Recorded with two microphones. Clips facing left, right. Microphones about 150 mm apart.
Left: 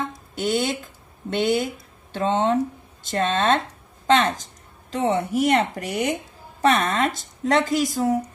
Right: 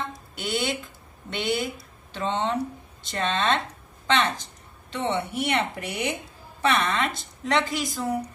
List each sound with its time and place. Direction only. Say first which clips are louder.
0.4 s speech: left 5 dB; 45° left (ahead or behind)